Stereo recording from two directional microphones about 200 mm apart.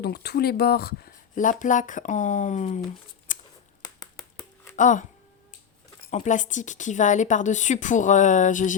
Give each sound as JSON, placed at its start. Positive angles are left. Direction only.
{"t": 0.0, "sound": "speech", "side_deg": 50}
{"t": 3.3, "sound": "a sound", "side_deg": 40}
{"t": 3.8, "sound": "finger snapping", "side_deg": 20}
{"t": 4.8, "sound": "speech", "side_deg": 40}
{"t": 6.1, "sound": "speech", "side_deg": 40}